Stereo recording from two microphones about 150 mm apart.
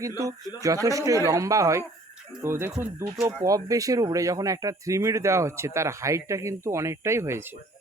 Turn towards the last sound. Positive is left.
turn(degrees=-20)  # may be behind; listen again after turning